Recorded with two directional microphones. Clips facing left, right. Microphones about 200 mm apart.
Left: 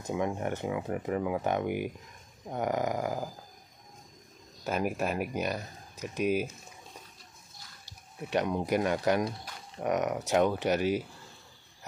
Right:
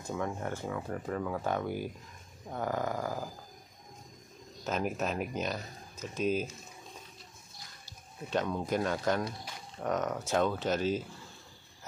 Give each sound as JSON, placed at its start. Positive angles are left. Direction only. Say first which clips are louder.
{"t": 0.0, "sound": "speech", "louder": "left 4 dB", "side_deg": 15}
{"t": 4.6, "sound": "speech", "louder": "left 2 dB", "side_deg": 10}
{"t": 8.3, "sound": "speech", "louder": "left 3 dB", "side_deg": 15}